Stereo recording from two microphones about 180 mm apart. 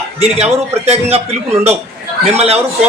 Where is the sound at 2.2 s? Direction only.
35° right (ahead or behind).